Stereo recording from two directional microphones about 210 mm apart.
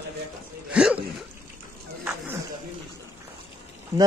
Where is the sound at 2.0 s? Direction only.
10° right (ahead or behind).